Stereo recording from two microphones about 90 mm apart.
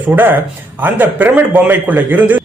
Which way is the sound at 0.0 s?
20° right (ahead or behind).